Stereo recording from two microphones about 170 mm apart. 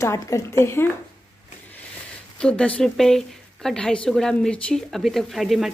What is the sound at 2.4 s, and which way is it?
Speech, 5° left (ahead or behind).